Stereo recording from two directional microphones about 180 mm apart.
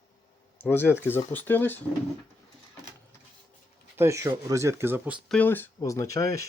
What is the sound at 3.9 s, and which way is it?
Speech, 15° right (ahead or behind).